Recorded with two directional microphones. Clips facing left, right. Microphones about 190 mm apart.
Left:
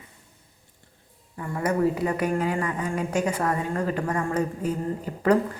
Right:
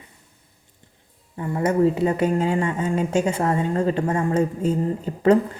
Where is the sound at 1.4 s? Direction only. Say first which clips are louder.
Right 4 dB; 25° right (ahead or behind).